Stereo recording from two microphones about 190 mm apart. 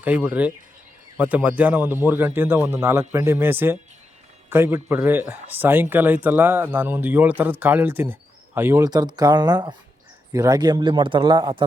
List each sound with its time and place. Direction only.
0.0 s a man's voice: 10° right (ahead or behind)